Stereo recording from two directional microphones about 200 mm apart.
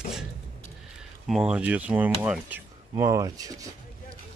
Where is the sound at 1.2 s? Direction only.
Centre (ahead or behind).